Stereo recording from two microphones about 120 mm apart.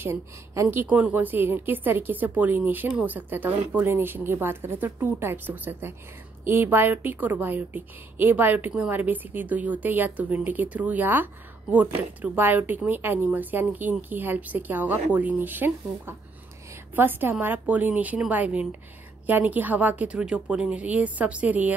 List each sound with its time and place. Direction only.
0.0 s speech: 20° right (ahead or behind)